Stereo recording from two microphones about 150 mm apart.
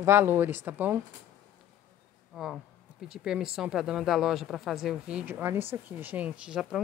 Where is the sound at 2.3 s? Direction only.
Centre (ahead or behind).